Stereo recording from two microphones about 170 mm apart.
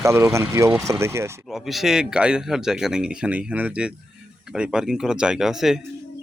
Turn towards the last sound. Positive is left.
turn(degrees=-5)  # may be behind; listen again after turning